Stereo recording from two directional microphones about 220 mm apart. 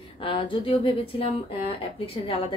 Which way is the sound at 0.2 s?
25° left (ahead or behind).